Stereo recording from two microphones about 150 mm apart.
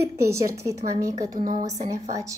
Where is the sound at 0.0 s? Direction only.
20° right (ahead or behind).